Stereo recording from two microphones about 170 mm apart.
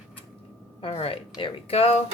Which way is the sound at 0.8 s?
35° left (ahead or behind).